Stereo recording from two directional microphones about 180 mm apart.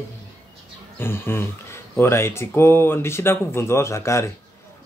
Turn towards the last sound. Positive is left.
turn(degrees=15)  # may be behind; listen again after turning